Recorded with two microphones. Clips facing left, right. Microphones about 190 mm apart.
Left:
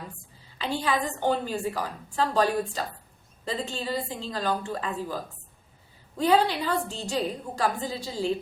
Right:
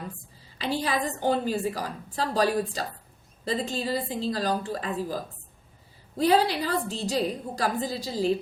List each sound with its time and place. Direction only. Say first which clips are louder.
0.6 s a woman's voice: even; 40° right (ahead or behind)